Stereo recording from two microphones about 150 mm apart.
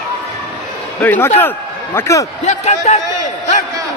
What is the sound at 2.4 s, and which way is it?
Speech, 50° left (ahead or behind).